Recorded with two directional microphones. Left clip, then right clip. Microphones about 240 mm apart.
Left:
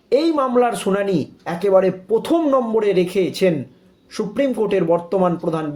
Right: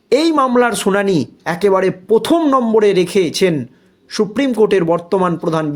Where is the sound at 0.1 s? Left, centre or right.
Right.